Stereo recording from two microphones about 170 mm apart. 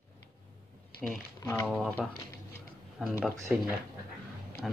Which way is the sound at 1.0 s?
Centre (ahead or behind).